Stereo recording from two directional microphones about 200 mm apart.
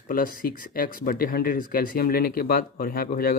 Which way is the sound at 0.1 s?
45° left (ahead or behind).